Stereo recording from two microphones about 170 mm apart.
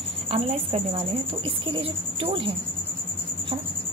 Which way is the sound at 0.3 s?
35° right (ahead or behind).